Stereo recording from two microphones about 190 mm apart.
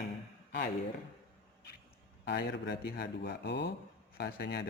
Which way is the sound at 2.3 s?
65° left (ahead or behind).